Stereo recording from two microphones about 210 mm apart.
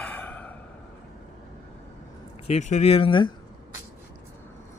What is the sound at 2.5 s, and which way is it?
Speech, 35° left (ahead or behind).